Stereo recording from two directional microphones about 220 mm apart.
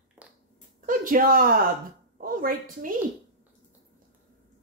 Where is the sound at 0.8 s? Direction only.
35° right (ahead or behind).